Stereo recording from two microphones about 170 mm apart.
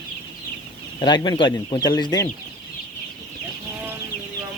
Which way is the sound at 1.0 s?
25° left (ahead or behind).